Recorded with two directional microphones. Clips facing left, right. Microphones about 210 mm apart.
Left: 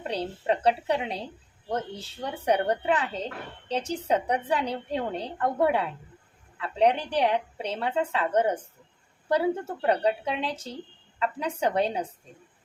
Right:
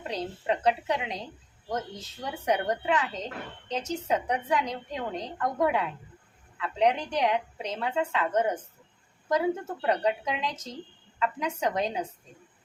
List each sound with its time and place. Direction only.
0.1 s a woman's voice: 30° left (ahead or behind)